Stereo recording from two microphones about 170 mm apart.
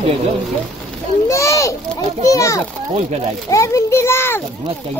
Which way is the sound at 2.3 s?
20° left (ahead or behind).